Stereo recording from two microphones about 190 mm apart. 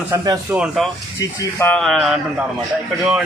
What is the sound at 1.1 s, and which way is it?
Speech, 10° left (ahead or behind).